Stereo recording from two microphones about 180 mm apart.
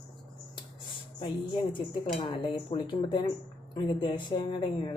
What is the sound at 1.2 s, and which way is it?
A woman's voice, 25° left (ahead or behind).